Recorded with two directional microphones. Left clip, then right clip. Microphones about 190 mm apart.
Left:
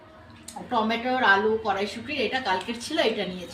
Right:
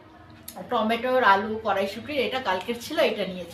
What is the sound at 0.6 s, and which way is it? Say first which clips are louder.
A woman's voice: right 1 dB; 20° right (ahead or behind).